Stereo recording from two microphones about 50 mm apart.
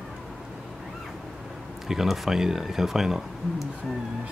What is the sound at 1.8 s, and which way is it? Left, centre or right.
Speech, centre.